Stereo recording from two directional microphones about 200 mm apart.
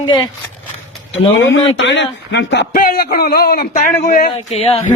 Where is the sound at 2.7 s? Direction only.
45° left (ahead or behind).